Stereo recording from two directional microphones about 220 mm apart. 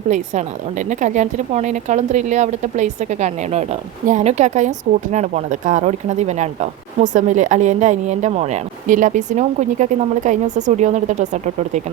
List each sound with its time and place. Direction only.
0.1 s speech: 35° right (ahead or behind)